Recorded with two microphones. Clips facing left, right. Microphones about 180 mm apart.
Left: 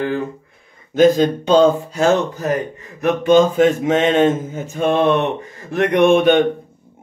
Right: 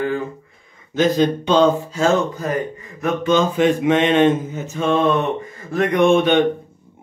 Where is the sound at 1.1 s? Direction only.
45° left (ahead or behind).